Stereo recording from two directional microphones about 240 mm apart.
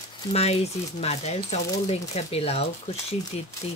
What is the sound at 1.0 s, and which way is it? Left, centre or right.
Speech, left.